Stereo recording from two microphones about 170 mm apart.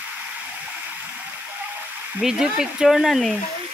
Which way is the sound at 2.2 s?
5° right (ahead or behind).